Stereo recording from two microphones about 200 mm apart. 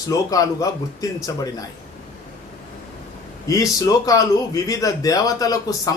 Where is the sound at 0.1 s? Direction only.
15° left (ahead or behind).